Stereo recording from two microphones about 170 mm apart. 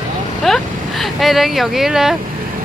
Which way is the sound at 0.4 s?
Centre (ahead or behind).